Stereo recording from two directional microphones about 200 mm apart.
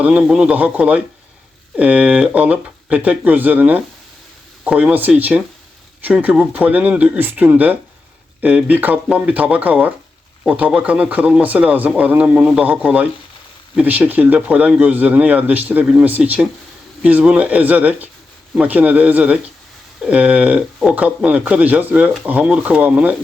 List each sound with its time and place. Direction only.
0.0 s speech: 5° right (ahead or behind)